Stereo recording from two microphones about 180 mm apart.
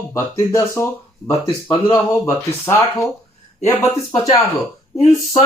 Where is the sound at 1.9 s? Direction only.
10° left (ahead or behind).